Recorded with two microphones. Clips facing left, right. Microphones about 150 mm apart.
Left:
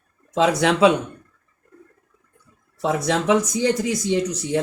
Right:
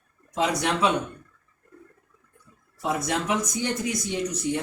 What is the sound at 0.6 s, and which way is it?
Speech, 90° left.